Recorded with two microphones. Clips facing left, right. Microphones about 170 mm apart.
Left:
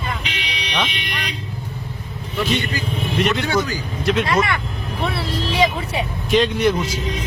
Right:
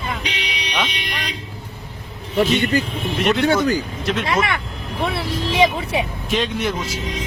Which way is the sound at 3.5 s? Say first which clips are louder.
Right 4 dB; 60° right (ahead or behind).